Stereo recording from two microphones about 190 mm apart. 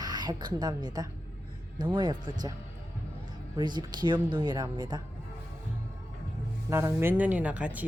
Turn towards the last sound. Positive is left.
turn(degrees=-10)  # may be behind; listen again after turning